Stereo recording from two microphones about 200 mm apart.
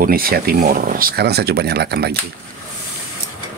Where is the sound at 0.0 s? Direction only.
45° right (ahead or behind).